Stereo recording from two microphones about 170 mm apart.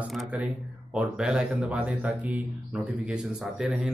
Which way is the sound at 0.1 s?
5° right (ahead or behind).